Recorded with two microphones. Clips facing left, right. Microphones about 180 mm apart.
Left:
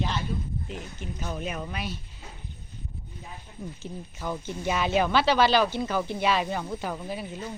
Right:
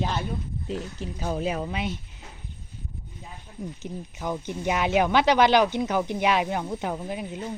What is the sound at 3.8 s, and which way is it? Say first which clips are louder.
Speech: right 2 dB; 15° right (ahead or behind).